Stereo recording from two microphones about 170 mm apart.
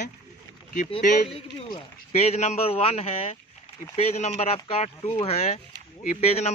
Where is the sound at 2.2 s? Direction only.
40° left (ahead or behind).